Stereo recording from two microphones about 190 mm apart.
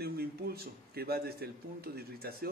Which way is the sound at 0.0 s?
55° right (ahead or behind).